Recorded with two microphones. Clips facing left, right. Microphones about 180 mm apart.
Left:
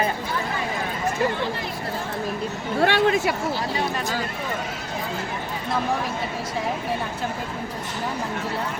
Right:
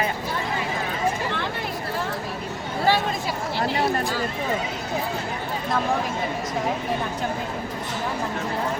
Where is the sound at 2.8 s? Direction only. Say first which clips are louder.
Left 3 dB; 70° left (ahead or behind).